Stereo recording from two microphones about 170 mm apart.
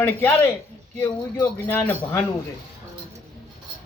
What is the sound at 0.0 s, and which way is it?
Speech, 15° left (ahead or behind).